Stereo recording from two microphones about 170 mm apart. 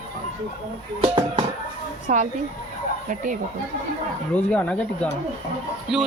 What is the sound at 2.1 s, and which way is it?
Speech, 50° right (ahead or behind).